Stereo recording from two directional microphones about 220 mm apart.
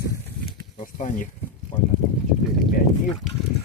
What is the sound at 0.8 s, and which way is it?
Speech, 35° left (ahead or behind).